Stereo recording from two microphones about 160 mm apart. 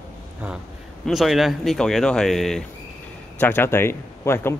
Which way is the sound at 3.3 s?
15° left (ahead or behind).